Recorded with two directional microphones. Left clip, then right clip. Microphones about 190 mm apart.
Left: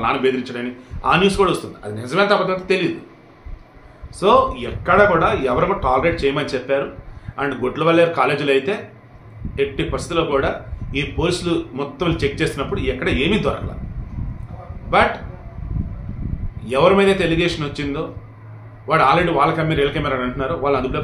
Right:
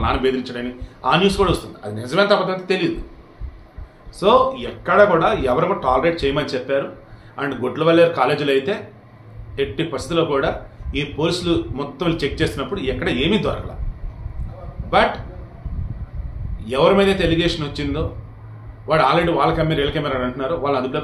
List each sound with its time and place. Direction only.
0.0 s a man's voice: 5° left (ahead or behind)
4.2 s a man's voice: 5° left (ahead or behind)
14.9 s a man's voice: 5° left (ahead or behind)
16.6 s a man's voice: 10° left (ahead or behind)